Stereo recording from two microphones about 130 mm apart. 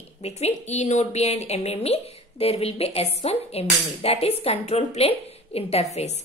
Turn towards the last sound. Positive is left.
turn(degrees=60)  # may be behind; listen again after turning